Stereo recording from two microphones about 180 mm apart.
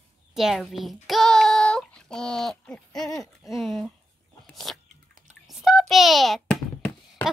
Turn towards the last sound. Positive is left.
turn(degrees=5)  # may be behind; listen again after turning